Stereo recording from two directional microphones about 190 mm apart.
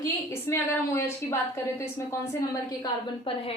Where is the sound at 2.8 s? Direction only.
30° left (ahead or behind).